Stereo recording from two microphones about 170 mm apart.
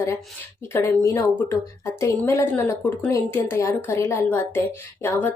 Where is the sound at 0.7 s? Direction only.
15° left (ahead or behind).